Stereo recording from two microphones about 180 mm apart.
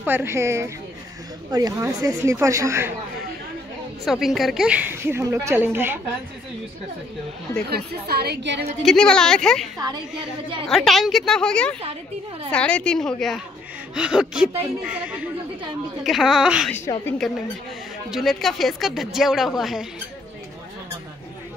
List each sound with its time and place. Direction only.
0.0 s speech: 10° right (ahead or behind)
4.0 s speech: centre (ahead or behind)
7.7 s a woman's voice: 60° right (ahead or behind)
8.8 s speech: 5° left (ahead or behind)
10.7 s speech: centre (ahead or behind)
16.7 s a woman's voice: 10° left (ahead or behind)
18.1 s speech: centre (ahead or behind)